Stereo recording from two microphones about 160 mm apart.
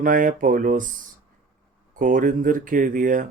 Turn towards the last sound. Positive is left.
turn(degrees=-55)  # may be behind; listen again after turning